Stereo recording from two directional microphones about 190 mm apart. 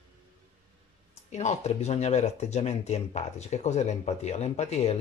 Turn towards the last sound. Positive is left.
turn(degrees=35)  # may be behind; listen again after turning